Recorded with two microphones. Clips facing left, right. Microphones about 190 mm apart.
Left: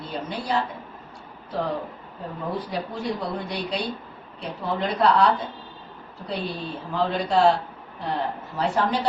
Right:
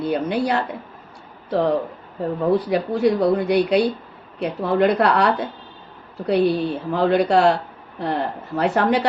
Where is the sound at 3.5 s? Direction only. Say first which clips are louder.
Right 11 dB; 65° right (ahead or behind).